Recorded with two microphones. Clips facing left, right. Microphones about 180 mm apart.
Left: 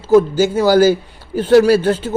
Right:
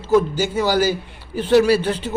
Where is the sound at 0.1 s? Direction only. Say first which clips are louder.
Left 6 dB; 45° left (ahead or behind).